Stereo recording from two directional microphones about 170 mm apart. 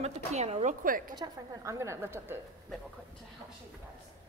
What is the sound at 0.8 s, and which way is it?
Speech, 55° right (ahead or behind).